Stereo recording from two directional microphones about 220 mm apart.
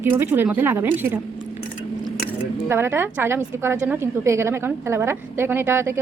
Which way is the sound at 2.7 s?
10° right (ahead or behind).